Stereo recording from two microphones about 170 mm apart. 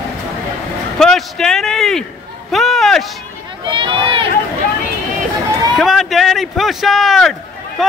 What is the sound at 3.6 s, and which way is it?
Run, 30° right (ahead or behind).